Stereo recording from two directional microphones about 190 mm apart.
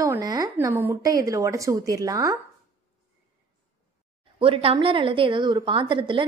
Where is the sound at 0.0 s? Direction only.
20° right (ahead or behind).